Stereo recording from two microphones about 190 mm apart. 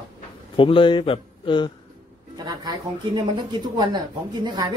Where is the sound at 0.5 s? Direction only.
25° left (ahead or behind).